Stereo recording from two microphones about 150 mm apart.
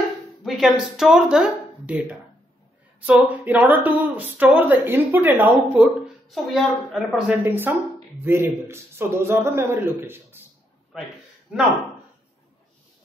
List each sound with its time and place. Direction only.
0.4 s a man's voice: centre (ahead or behind)
6.3 s speech: centre (ahead or behind)
7.2 s a man's voice: 15° right (ahead or behind)
10.9 s speech: centre (ahead or behind)